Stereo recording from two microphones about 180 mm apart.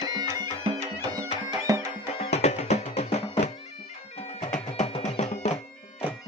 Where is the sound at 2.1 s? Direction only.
35° left (ahead or behind).